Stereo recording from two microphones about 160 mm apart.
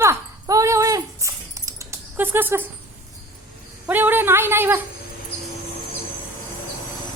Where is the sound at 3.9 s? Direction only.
10° right (ahead or behind).